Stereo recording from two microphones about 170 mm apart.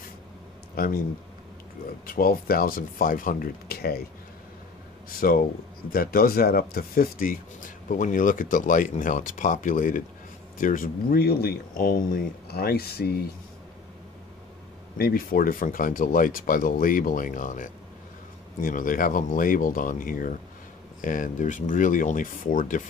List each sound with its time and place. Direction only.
0.8 s speech: 65° left (ahead or behind)
2.0 s speech: 55° left (ahead or behind)
5.2 s speech: 55° left (ahead or behind)
15.0 s speech: 60° left (ahead or behind)